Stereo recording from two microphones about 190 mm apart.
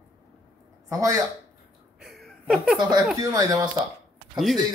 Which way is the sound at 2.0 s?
Centre (ahead or behind).